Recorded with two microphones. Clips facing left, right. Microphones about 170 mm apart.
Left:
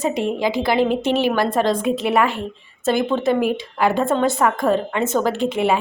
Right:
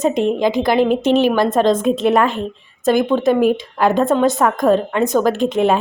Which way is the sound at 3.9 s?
20° right (ahead or behind).